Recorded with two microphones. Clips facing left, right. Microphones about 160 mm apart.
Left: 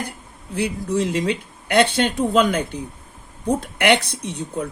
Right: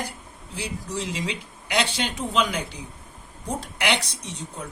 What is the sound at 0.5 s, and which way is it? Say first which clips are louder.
Speech: left 10 dB; 55° left (ahead or behind).